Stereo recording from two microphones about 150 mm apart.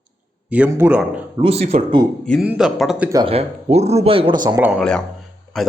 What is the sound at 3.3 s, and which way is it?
Speech, 45° right (ahead or behind).